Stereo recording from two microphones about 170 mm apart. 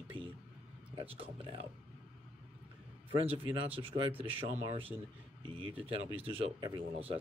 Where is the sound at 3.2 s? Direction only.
35° right (ahead or behind).